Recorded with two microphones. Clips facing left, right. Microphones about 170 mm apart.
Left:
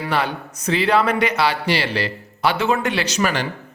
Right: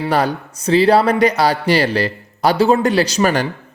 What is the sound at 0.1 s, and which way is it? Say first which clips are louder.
A man's voice: right 4 dB; 40° right (ahead or behind).